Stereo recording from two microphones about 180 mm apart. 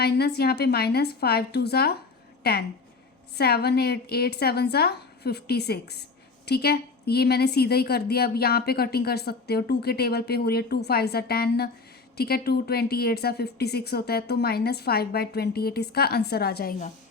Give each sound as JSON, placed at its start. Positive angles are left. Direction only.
{"t": 0.0, "sound": "a woman's voice", "side_deg": 65}